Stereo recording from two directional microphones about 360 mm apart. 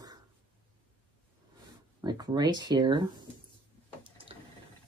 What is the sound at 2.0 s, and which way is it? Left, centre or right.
Speech, centre.